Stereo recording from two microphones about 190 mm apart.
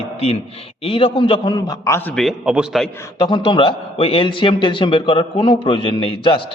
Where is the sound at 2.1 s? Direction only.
Centre (ahead or behind).